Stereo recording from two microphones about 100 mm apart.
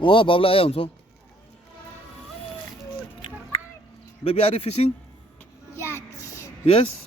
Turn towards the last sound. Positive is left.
turn(degrees=90)